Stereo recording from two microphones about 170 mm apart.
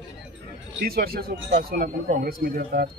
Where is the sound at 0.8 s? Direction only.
65° right (ahead or behind).